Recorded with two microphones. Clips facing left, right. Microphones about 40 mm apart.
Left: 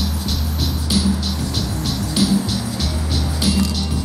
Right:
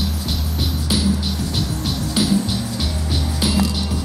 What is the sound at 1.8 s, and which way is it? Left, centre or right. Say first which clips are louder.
Music: left 2 dB; centre.